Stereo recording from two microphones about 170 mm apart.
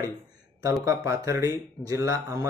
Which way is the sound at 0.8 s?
15° right (ahead or behind).